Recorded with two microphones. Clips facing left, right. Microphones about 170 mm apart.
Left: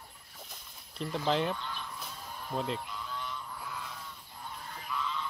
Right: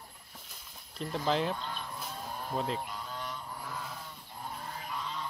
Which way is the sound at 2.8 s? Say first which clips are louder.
Right 1 dB; 45° right (ahead or behind).